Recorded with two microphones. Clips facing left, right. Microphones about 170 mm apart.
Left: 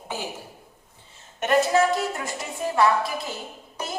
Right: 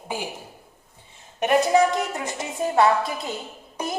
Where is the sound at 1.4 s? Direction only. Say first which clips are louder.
Right 2 dB; 15° right (ahead or behind).